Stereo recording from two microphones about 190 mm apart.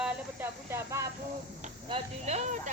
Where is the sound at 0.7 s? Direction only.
15° right (ahead or behind).